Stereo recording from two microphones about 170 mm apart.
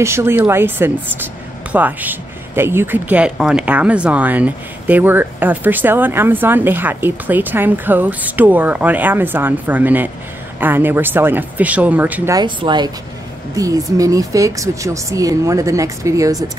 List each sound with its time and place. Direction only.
0.0 s speech: 15° right (ahead or behind)
12.4 s speech: 25° right (ahead or behind)